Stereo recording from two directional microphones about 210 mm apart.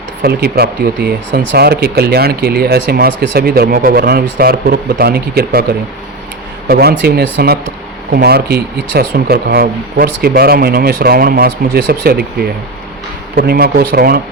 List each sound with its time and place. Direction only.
0.2 s speech: 50° right (ahead or behind)
6.7 s speech: 50° right (ahead or behind)